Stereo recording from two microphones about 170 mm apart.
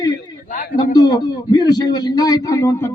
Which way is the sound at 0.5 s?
50° left (ahead or behind).